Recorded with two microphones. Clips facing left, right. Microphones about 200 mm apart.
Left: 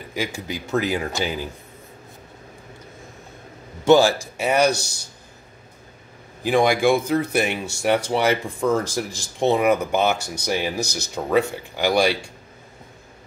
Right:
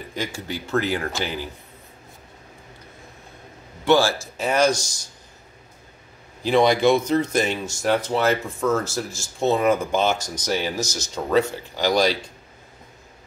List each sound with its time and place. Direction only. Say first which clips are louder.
0.1 s speech: left 2 dB; 10° left (ahead or behind)
3.9 s speech: left 4 dB; 15° left (ahead or behind)
6.4 s speech: right 1 dB; 10° left (ahead or behind)
10.1 s speech: even; 60° left (ahead or behind)
10.4 s speech: left 1 dB; 15° left (ahead or behind)
10.8 s speech: left 1 dB; 60° left (ahead or behind)
11.1 s speech: even; 10° left (ahead or behind)